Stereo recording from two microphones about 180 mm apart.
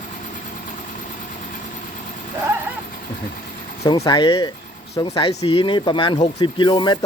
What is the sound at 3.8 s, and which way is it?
Speech, 20° left (ahead or behind).